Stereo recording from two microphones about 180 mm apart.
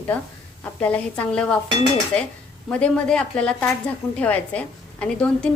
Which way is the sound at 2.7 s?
5° left (ahead or behind).